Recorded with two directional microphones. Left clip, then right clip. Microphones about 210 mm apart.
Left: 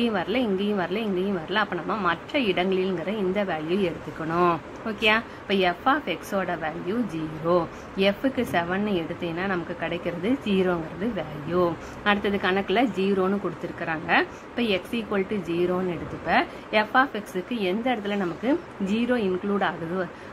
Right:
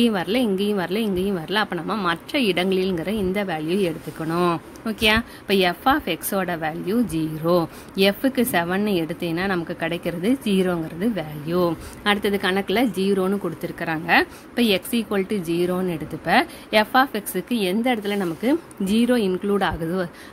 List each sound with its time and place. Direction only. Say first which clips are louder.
0.0 s speech: right 4 dB; 50° right (ahead or behind)